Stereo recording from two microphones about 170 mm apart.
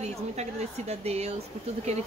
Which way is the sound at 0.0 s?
40° right (ahead or behind).